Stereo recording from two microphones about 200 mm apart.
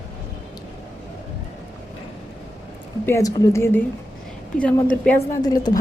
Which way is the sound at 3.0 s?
15° left (ahead or behind).